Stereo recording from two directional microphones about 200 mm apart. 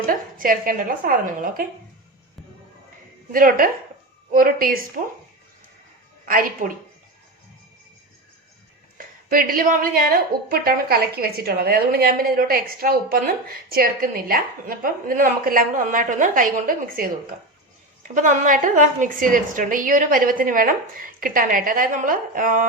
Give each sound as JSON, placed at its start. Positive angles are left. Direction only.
{"t": 0.1, "sound": "a woman's voice", "side_deg": -45}
{"t": 3.3, "sound": "a woman's voice", "side_deg": -45}
{"t": 6.2, "sound": "a woman's voice", "side_deg": -45}
{"t": 9.0, "sound": "a woman's voice", "side_deg": -45}
{"t": 18.1, "sound": "a woman's voice", "side_deg": -40}